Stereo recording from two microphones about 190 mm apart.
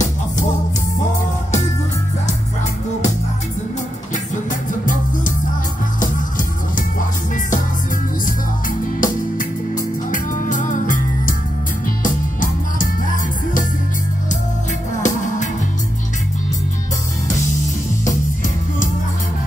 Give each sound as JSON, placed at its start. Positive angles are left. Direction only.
{"t": 4.1, "sound": "music", "side_deg": 40}
{"t": 8.3, "sound": "music", "side_deg": 45}
{"t": 15.0, "sound": "music", "side_deg": 40}
{"t": 18.0, "sound": "music", "side_deg": 45}